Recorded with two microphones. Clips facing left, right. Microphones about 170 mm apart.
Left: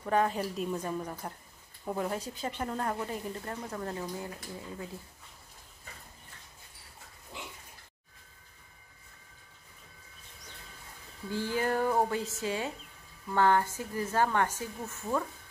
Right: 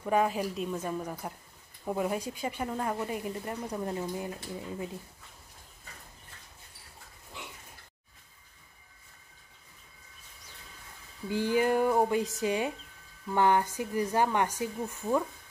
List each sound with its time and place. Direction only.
0.0 s a woman's voice: 10° right (ahead or behind)
11.2 s speech: 15° right (ahead or behind)